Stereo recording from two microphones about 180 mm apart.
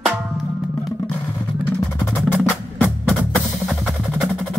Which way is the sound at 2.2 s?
5° right (ahead or behind).